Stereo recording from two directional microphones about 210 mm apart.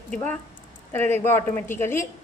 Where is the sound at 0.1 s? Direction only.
10° left (ahead or behind).